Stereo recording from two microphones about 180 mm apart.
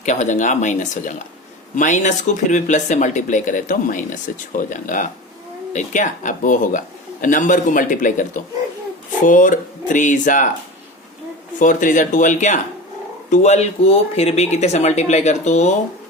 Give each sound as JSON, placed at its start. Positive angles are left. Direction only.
{"t": 0.0, "sound": "speech", "side_deg": 40}
{"t": 11.6, "sound": "speech", "side_deg": 45}